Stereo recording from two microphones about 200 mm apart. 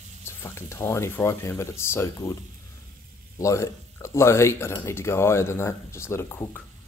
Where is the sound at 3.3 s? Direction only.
15° left (ahead or behind).